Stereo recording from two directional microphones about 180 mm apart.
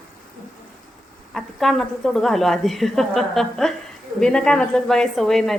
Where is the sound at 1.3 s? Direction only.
Centre (ahead or behind).